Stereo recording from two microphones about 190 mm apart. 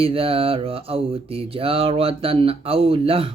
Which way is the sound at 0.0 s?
30° right (ahead or behind).